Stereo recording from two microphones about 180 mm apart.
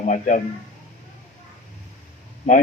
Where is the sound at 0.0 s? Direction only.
45° left (ahead or behind).